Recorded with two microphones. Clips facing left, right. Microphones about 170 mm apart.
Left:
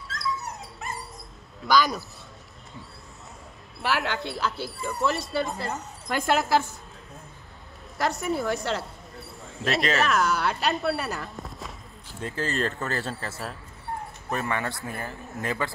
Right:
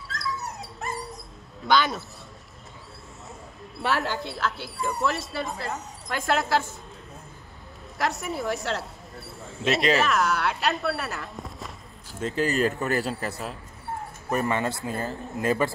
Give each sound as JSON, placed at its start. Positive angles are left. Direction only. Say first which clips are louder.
{"t": 0.7, "sound": "dog", "louder": "right 3 dB", "side_deg": 0}
{"t": 1.6, "sound": "a man's voice", "louder": "even", "side_deg": 0}
{"t": 3.8, "sound": "speech", "louder": "right 1 dB", "side_deg": 0}
{"t": 8.0, "sound": "speech", "louder": "left 2 dB", "side_deg": 0}
{"t": 12.2, "sound": "speech", "louder": "right 4 dB", "side_deg": -20}
{"t": 13.3, "sound": "speech", "louder": "right 2 dB", "side_deg": 0}
{"t": 14.3, "sound": "speech", "louder": "right 4 dB", "side_deg": -20}